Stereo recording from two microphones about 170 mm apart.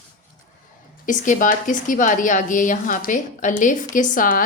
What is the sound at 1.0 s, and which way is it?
A woman's voice, 50° left (ahead or behind).